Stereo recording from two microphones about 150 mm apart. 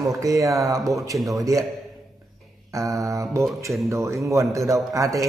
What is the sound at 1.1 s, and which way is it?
Mantra, centre (ahead or behind).